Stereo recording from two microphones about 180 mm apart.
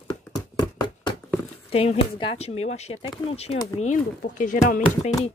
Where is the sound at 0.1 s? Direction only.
25° left (ahead or behind).